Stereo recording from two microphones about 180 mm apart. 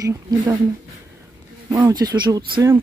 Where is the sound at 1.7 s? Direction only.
20° right (ahead or behind).